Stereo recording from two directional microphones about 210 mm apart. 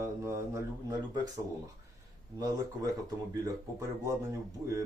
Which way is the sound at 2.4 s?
15° right (ahead or behind).